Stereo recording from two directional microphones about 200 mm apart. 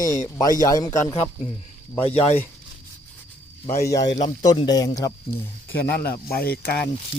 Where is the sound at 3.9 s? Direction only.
20° left (ahead or behind).